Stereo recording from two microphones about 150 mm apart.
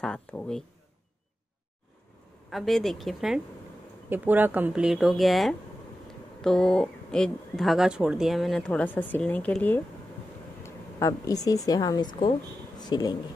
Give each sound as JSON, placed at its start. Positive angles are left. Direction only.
{"t": 0.0, "sound": "speech", "side_deg": 5}
{"t": 2.5, "sound": "speech", "side_deg": 0}
{"t": 4.1, "sound": "speech", "side_deg": -10}
{"t": 10.6, "sound": "a woman's voice", "side_deg": 20}